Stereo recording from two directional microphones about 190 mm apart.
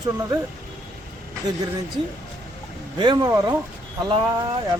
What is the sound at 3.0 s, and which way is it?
Speech, 20° right (ahead or behind).